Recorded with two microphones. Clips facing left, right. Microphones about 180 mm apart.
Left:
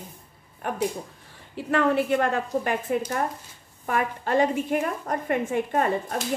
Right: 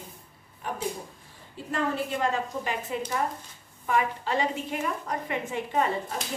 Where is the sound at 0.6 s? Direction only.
60° left (ahead or behind).